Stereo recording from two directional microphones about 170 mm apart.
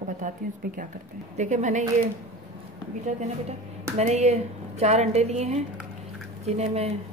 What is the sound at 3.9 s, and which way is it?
A woman's voice, 40° right (ahead or behind).